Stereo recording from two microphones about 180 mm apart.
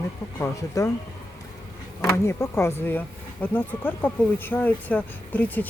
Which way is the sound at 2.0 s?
15° left (ahead or behind).